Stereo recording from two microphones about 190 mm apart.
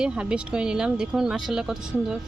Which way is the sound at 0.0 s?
5° right (ahead or behind).